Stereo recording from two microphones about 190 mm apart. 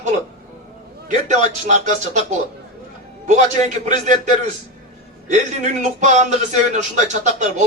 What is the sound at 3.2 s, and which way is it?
Speech, 40° right (ahead or behind).